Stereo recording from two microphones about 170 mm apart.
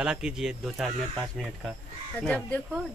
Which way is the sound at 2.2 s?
5° left (ahead or behind).